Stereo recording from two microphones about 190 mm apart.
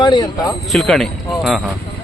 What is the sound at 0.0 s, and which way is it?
Speech, 25° left (ahead or behind).